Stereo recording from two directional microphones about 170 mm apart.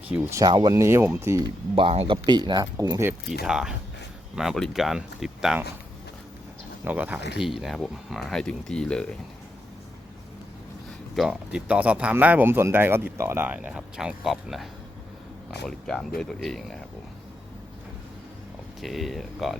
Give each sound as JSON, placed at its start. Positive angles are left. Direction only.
{"t": 0.1, "sound": "speech", "side_deg": -15}
{"t": 1.7, "sound": "speech", "side_deg": -35}
{"t": 3.4, "sound": "speech", "side_deg": -5}
{"t": 6.8, "sound": "speech", "side_deg": -10}
{"t": 11.1, "sound": "speech", "side_deg": 0}
{"t": 18.8, "sound": "speech", "side_deg": 0}